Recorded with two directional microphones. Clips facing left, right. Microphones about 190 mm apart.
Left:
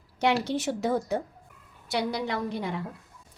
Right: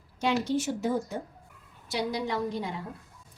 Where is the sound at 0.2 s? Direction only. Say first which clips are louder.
Left 1 dB; 70° left (ahead or behind).